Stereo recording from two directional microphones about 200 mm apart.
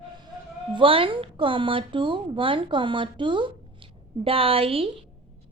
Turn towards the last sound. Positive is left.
turn(degrees=-30)  # may be behind; listen again after turning